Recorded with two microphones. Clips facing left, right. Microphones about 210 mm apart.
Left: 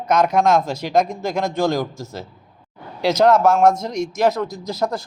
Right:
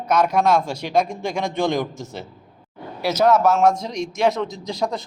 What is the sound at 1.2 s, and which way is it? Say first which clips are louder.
Speech: left 2 dB; 5° left (ahead or behind).